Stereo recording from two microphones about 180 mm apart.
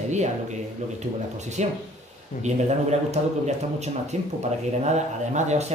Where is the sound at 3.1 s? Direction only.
40° right (ahead or behind).